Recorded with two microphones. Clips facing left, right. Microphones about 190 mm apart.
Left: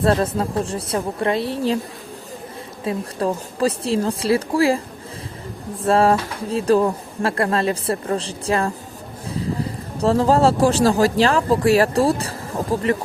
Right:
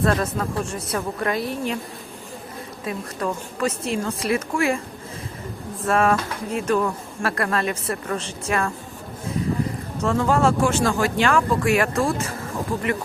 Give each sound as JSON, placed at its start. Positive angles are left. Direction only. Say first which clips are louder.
{"t": 0.0, "sound": "speech", "louder": "left 3 dB", "side_deg": 30}
{"t": 2.8, "sound": "speech", "louder": "left 5 dB", "side_deg": 30}
{"t": 5.8, "sound": "speech", "louder": "left 4 dB", "side_deg": 30}